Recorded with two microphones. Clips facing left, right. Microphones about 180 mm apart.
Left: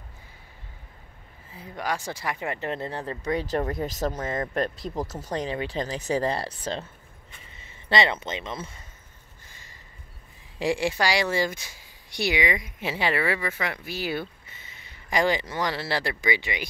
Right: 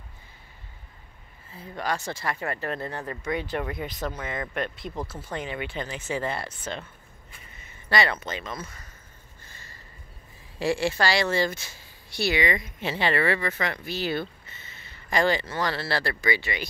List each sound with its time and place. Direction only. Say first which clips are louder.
1.5 s speech: even; 10° left (ahead or behind)
9.5 s a sound: right 2 dB; 15° left (ahead or behind)
10.6 s speech: even; 15° left (ahead or behind)